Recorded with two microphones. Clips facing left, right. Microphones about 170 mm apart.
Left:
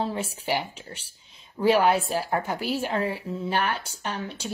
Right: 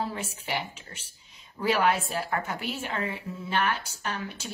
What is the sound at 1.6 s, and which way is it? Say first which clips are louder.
Speech: left 6 dB; 20° left (ahead or behind).